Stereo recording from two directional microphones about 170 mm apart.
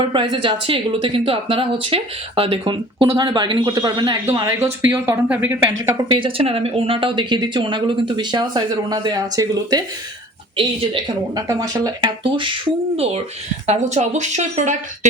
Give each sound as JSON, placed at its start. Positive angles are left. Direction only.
{"t": 0.0, "sound": "speech", "side_deg": -30}
{"t": 6.1, "sound": "speech", "side_deg": -30}
{"t": 13.7, "sound": "speech", "side_deg": -45}